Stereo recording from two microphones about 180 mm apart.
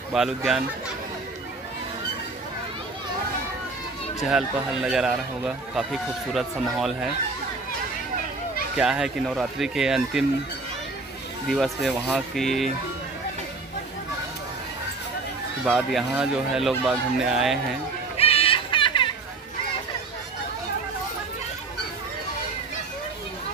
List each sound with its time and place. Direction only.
0.1 s a man's voice: centre (ahead or behind)
4.2 s a man's voice: 5° right (ahead or behind)
8.7 s a man's voice: 5° right (ahead or behind)
11.4 s a man's voice: centre (ahead or behind)
15.6 s a man's voice: centre (ahead or behind)
18.1 s a sound: 35° left (ahead or behind)